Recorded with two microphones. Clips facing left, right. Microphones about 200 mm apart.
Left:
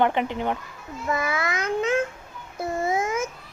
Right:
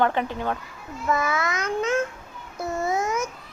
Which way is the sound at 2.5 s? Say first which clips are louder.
Left 1 dB; 25° left (ahead or behind).